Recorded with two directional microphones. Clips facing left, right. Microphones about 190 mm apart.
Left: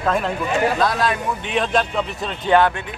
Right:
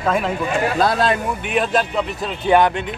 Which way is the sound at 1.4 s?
5° right (ahead or behind).